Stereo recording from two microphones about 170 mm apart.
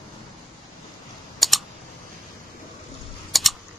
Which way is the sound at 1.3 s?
Centre (ahead or behind).